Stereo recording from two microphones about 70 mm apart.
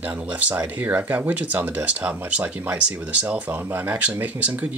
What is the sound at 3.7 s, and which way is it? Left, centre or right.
Speech, right.